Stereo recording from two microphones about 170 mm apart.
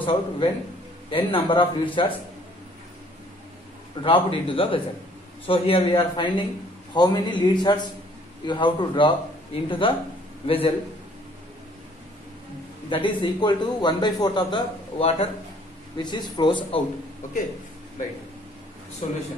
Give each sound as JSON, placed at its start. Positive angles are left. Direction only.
{"t": 0.0, "sound": "a man's voice", "side_deg": 30}
{"t": 4.0, "sound": "a man's voice", "side_deg": 30}
{"t": 12.9, "sound": "a man's voice", "side_deg": 30}
{"t": 19.0, "sound": "a man's voice", "side_deg": 40}